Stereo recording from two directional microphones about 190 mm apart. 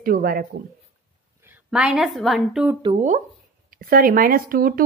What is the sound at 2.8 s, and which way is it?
Speech, 25° right (ahead or behind).